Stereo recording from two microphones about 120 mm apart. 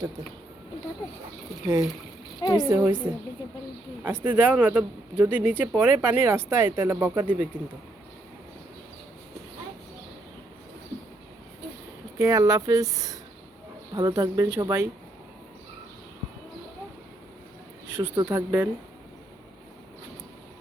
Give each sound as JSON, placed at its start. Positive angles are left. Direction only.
{"t": 2.4, "sound": "a woman's voice", "side_deg": 35}
{"t": 2.6, "sound": "speech", "side_deg": -20}
{"t": 12.2, "sound": "speech", "side_deg": -25}
{"t": 17.8, "sound": "a sound", "side_deg": -15}
{"t": 18.3, "sound": "speech", "side_deg": -20}